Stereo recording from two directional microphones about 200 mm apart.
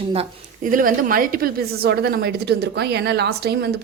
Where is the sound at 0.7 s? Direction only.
45° right (ahead or behind).